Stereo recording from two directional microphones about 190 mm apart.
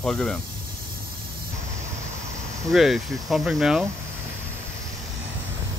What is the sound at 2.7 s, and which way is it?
Speech, centre (ahead or behind).